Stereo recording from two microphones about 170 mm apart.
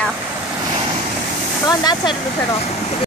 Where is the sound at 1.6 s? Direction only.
20° left (ahead or behind).